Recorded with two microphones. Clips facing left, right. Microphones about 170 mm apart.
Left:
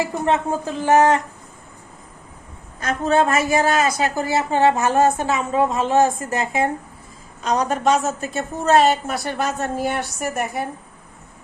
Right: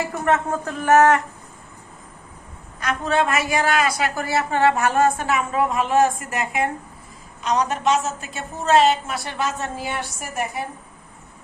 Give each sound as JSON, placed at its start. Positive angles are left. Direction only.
{"t": 0.0, "sound": "speech", "side_deg": 15}
{"t": 0.6, "sound": "a woman's voice", "side_deg": 25}
{"t": 3.0, "sound": "a woman's voice", "side_deg": 45}
{"t": 3.3, "sound": "a woman's voice", "side_deg": 25}